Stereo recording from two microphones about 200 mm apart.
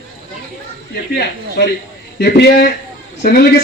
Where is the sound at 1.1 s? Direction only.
55° left (ahead or behind).